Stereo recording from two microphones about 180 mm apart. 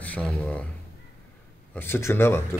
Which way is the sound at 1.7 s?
15° left (ahead or behind).